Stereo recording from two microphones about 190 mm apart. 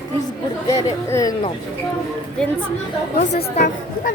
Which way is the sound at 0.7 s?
20° left (ahead or behind).